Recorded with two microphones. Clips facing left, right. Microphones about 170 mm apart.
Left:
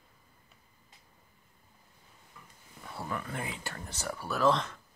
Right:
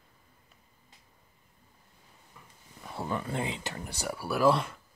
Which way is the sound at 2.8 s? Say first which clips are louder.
Right 4 dB; 20° right (ahead or behind).